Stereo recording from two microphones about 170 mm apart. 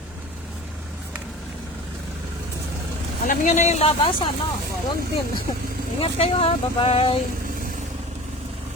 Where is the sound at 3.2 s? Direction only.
45° left (ahead or behind).